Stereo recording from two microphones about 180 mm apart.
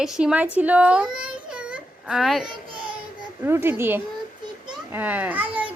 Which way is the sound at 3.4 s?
10° right (ahead or behind).